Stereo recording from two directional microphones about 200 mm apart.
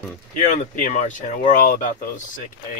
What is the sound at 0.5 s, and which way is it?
Speech, 40° left (ahead or behind).